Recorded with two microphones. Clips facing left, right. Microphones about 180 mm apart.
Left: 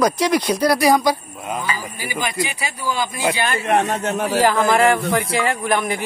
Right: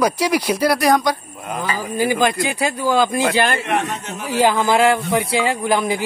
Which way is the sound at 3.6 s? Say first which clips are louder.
Left 4 dB; 45° left (ahead or behind).